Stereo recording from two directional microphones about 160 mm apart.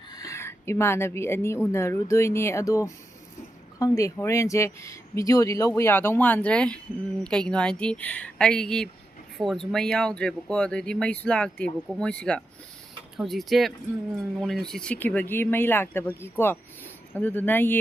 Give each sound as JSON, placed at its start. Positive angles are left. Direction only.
{"t": 0.1, "sound": "speech", "side_deg": 20}